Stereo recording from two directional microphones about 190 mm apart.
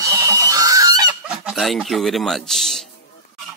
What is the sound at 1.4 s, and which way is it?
Speech, centre (ahead or behind).